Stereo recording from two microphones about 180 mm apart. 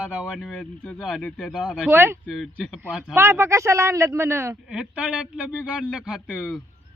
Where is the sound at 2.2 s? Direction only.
Centre (ahead or behind).